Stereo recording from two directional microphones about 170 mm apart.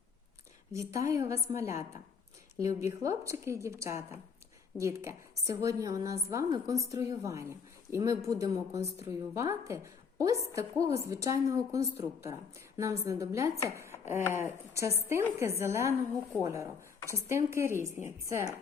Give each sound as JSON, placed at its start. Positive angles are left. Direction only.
{"t": 0.7, "sound": "chopping", "side_deg": -20}
{"t": 4.8, "sound": "a woman's voice", "side_deg": -15}
{"t": 9.0, "sound": "chopping", "side_deg": -15}
{"t": 10.5, "sound": "a woman's voice", "side_deg": -20}
{"t": 12.2, "sound": "chopping", "side_deg": -15}